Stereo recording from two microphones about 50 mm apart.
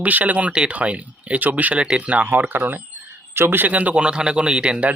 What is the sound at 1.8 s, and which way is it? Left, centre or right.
Speech, right.